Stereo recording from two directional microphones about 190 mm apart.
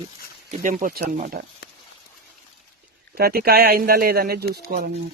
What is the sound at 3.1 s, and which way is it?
Speech, 55° right (ahead or behind).